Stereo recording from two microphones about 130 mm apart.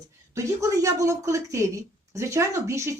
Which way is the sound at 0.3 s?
25° right (ahead or behind).